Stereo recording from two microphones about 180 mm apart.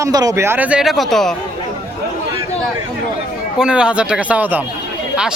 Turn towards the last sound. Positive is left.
turn(degrees=-10)  # may be behind; listen again after turning